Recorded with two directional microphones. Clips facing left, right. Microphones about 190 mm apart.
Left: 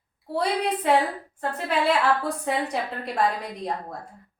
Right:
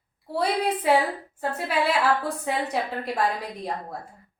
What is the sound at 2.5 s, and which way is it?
Speech, centre (ahead or behind).